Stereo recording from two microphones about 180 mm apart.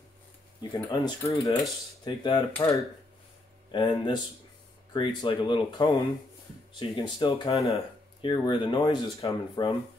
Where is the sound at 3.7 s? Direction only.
25° left (ahead or behind).